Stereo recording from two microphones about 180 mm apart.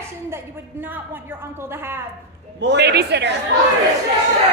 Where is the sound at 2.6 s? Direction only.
70° right (ahead or behind).